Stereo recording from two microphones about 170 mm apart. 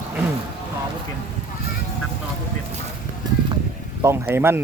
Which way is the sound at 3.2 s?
25° right (ahead or behind).